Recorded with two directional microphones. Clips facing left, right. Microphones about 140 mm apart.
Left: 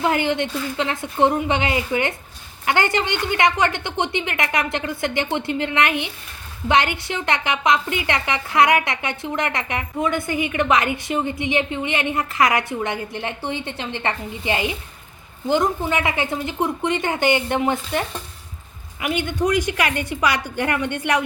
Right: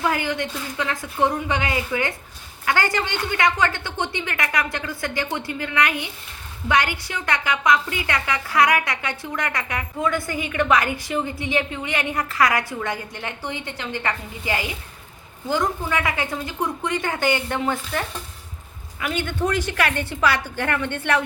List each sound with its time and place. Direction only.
0.0 s a woman's voice: 25° left (ahead or behind)